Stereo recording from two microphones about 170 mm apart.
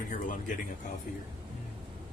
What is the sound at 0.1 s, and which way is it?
Speech, 50° left (ahead or behind).